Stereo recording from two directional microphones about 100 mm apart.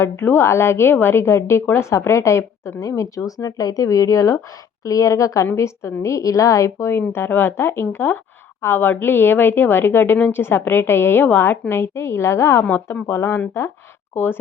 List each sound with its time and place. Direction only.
0.0 s a woman's voice: 25° left (ahead or behind)